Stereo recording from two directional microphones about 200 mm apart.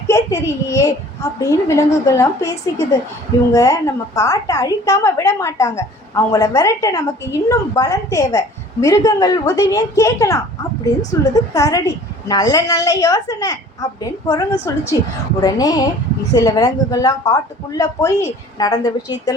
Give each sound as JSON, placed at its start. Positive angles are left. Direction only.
{"t": 0.1, "sound": "a woman's voice", "side_deg": 15}